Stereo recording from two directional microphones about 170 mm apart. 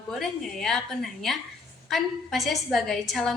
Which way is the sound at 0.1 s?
Centre (ahead or behind).